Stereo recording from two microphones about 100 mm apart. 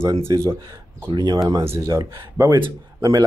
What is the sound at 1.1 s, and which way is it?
Speech, 40° right (ahead or behind).